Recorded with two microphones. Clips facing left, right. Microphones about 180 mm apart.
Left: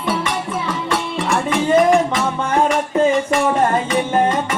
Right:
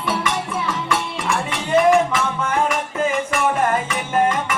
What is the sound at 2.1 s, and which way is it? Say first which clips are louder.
Music: left 3 dB; 35° left (ahead or behind).